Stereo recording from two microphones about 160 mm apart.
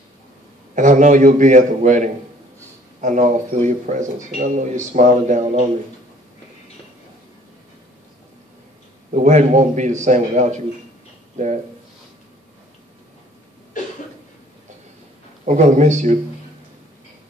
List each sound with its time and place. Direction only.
0.7 s speech: 50° right (ahead or behind)
9.1 s speech: 50° right (ahead or behind)
15.4 s speech: 45° right (ahead or behind)